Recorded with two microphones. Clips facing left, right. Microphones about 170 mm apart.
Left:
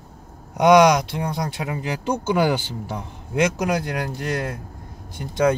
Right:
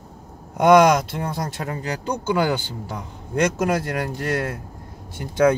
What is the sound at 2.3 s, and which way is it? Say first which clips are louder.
Speech: left 1 dB; 10° left (ahead or behind).